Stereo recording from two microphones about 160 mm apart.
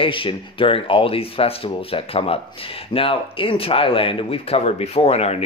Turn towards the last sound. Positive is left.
turn(degrees=40)  # may be behind; listen again after turning